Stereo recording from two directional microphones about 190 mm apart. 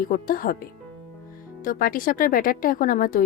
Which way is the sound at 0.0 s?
50° left (ahead or behind).